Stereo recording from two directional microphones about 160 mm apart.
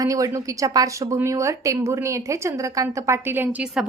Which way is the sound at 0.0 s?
20° right (ahead or behind).